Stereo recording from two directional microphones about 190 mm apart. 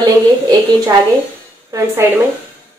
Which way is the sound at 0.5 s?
20° right (ahead or behind).